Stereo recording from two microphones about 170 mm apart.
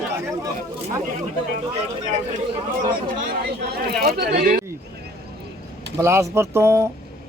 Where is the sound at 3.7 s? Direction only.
60° right (ahead or behind).